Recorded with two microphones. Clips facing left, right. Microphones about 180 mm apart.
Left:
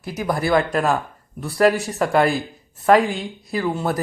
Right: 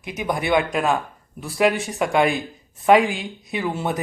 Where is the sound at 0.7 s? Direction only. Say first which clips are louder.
Left 1 dB; centre (ahead or behind).